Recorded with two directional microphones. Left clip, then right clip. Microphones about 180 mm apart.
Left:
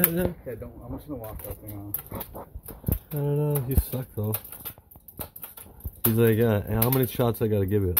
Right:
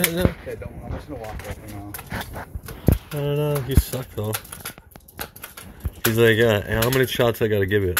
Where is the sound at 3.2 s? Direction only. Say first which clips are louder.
Right 4 dB; 5° left (ahead or behind).